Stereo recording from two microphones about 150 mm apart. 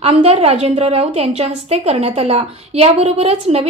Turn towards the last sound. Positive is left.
turn(degrees=-45)  # may be behind; listen again after turning